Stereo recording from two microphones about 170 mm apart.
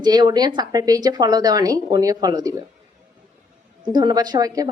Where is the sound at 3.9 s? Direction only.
25° right (ahead or behind).